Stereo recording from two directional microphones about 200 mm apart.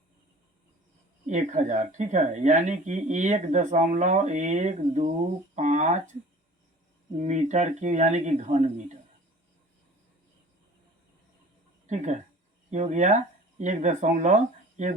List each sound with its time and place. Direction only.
1.3 s speech: 35° right (ahead or behind)
7.2 s speech: 35° right (ahead or behind)
11.9 s speech: 35° right (ahead or behind)